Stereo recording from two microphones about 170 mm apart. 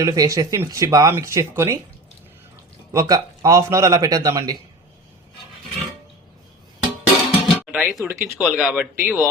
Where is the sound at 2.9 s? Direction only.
20° right (ahead or behind).